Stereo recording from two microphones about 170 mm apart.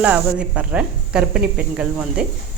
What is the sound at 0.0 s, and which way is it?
A woman's voice, 10° right (ahead or behind).